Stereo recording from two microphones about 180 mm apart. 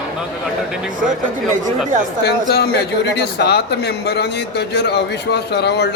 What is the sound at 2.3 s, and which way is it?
A man's voice, 60° left (ahead or behind).